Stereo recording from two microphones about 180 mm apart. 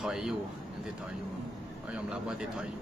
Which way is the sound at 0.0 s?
Centre (ahead or behind).